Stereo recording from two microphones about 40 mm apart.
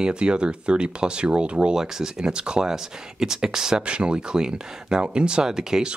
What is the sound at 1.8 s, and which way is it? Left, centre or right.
Speech, centre.